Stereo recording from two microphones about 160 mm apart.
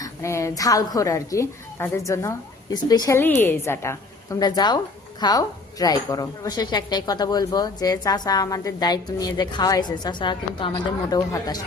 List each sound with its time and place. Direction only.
0.0 s a woman's voice: 20° left (ahead or behind)